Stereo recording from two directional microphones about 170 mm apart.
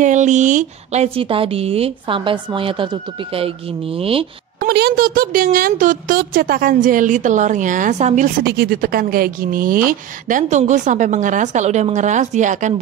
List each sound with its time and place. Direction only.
0.0 s a woman's voice: 45° right (ahead or behind)
4.6 s speech: 70° right (ahead or behind); by 8.3 s 45° right (ahead or behind)
8.5 s speech: 60° right (ahead or behind)